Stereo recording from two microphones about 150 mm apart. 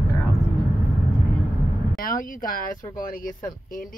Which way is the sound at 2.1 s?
70° left (ahead or behind).